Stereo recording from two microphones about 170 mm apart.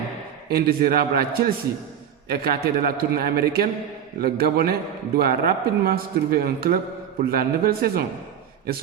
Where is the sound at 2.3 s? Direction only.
65° right (ahead or behind).